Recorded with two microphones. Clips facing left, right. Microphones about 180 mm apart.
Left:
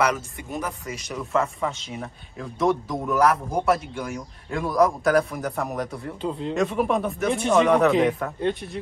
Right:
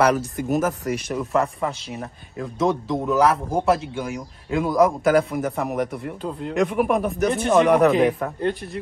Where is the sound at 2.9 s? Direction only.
25° right (ahead or behind).